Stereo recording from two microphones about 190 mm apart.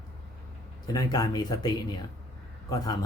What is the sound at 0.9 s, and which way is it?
Speech, 20° left (ahead or behind).